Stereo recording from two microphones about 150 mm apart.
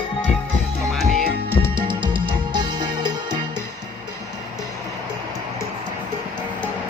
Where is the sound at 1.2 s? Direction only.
85° right.